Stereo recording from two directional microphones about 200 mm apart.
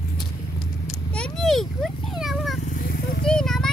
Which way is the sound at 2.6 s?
45° left (ahead or behind).